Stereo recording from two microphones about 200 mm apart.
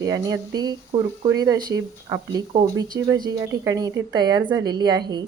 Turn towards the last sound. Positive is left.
turn(degrees=-20)  # may be behind; listen again after turning